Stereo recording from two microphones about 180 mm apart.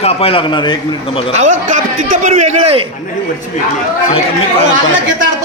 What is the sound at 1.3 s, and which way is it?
A man's voice, 40° right (ahead or behind).